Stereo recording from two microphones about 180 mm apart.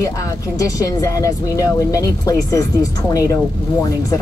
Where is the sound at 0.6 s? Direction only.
20° left (ahead or behind).